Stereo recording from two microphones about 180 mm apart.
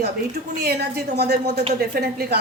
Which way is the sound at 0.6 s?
65° right (ahead or behind).